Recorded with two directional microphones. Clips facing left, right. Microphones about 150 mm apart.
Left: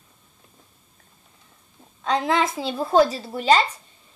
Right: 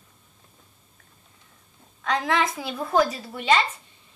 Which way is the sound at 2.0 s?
25° left (ahead or behind).